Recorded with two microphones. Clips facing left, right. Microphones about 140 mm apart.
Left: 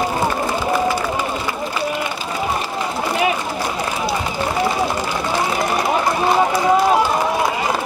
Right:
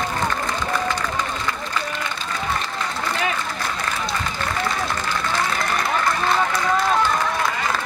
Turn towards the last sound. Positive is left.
turn(degrees=20)  # may be behind; listen again after turning